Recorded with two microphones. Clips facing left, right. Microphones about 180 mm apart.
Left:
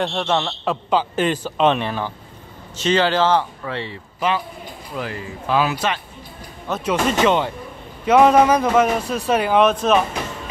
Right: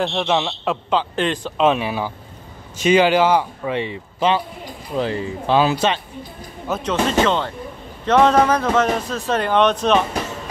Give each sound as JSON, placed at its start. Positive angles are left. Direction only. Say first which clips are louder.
{"t": 0.0, "sound": "a man's voice", "louder": "right 1 dB", "side_deg": -5}
{"t": 6.8, "sound": "speech", "louder": "even", "side_deg": 10}